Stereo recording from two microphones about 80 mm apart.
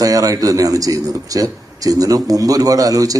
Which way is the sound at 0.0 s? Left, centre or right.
Right.